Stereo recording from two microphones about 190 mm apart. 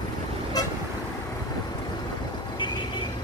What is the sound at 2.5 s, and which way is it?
Vehicle, 25° left (ahead or behind).